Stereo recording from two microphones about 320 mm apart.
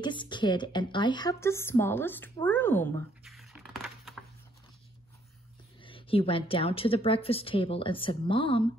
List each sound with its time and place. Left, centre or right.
0.0 s a woman's voice: centre
5.8 s a woman's voice: centre